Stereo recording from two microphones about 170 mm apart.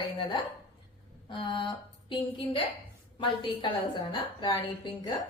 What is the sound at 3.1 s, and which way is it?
A woman's voice, 30° left (ahead or behind).